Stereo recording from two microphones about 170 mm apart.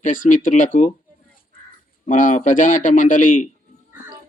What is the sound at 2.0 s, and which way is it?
Speech, 45° left (ahead or behind).